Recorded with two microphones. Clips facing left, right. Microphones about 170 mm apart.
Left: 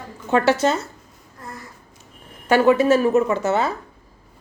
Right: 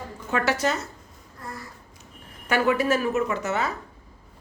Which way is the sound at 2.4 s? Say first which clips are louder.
Left 7 dB; 30° left (ahead or behind).